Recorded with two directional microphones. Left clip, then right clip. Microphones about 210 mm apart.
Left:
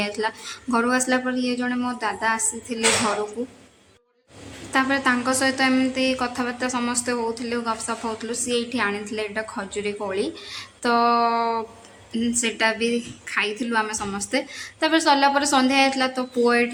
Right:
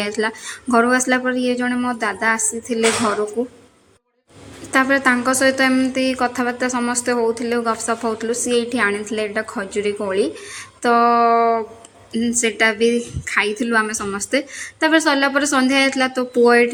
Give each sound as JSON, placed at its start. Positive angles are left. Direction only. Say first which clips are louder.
{"t": 0.0, "sound": "a woman's voice", "louder": "right 4 dB", "side_deg": -15}
{"t": 4.7, "sound": "a woman's voice", "louder": "right 5 dB", "side_deg": -15}